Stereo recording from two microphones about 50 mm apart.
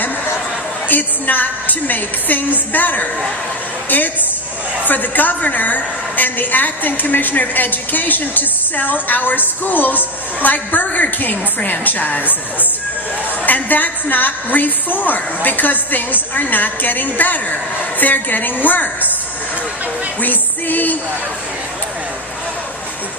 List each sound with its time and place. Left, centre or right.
0.9 s a woman's voice: left
13.4 s a woman's voice: left
20.2 s music: left